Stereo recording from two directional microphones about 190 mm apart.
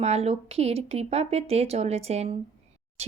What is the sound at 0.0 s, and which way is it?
Speech, 35° right (ahead or behind).